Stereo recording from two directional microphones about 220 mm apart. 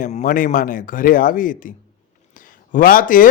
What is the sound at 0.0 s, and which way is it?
A man's voice, 35° left (ahead or behind).